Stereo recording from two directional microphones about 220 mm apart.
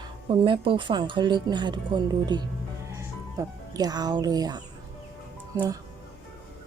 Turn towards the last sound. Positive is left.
turn(degrees=-15)  # may be behind; listen again after turning